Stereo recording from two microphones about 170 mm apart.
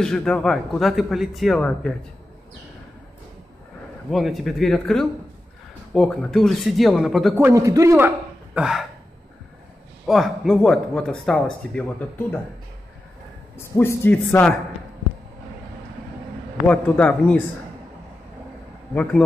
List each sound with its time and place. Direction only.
0.0 s a man's voice: 5° left (ahead or behind)
4.1 s a man's voice: centre (ahead or behind)
7.3 s speech: 15° right (ahead or behind)
8.5 s a man's voice: 5° right (ahead or behind)
10.0 s a man's voice: centre (ahead or behind)
13.6 s speech: 15° left (ahead or behind)
16.6 s speech: 10° left (ahead or behind)